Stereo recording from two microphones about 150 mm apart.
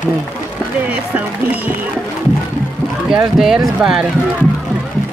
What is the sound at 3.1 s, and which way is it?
Speech, 5° right (ahead or behind).